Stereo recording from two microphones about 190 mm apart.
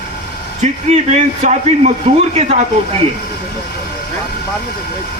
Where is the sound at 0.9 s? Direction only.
40° right (ahead or behind).